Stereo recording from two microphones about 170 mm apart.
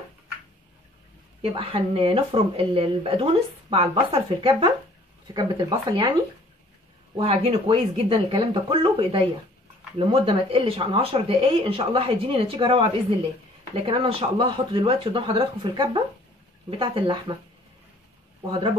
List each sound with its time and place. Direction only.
1.4 s speech: 30° right (ahead or behind)
7.2 s speech: 35° right (ahead or behind)